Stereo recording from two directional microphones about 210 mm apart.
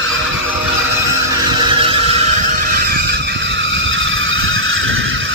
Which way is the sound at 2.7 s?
45° right (ahead or behind).